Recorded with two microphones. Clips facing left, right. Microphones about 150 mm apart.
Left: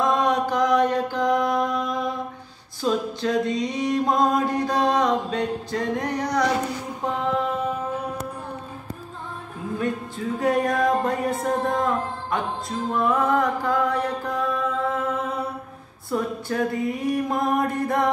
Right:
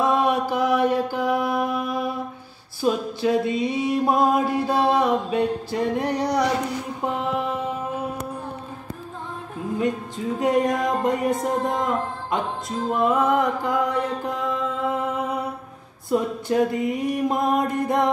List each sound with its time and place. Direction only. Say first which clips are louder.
0.0 s mantra: right 1 dB; 10° right (ahead or behind)
9.8 s music: right 2 dB; 20° right (ahead or behind)
16.1 s music: right 3 dB; 20° right (ahead or behind)